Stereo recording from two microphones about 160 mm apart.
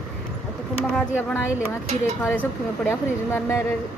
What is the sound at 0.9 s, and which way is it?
Speech, 10° left (ahead or behind).